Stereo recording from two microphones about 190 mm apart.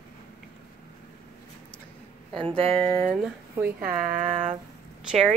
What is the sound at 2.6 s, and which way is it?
Speech, 30° right (ahead or behind).